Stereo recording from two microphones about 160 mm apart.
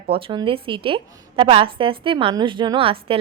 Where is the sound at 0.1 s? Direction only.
35° right (ahead or behind).